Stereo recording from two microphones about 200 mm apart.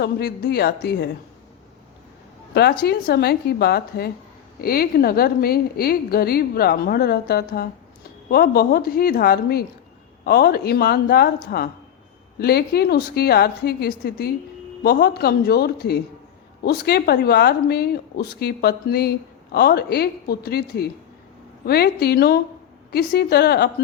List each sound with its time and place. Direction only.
0.0 s a woman's voice: 50° left (ahead or behind)
2.6 s a woman's voice: 55° left (ahead or behind)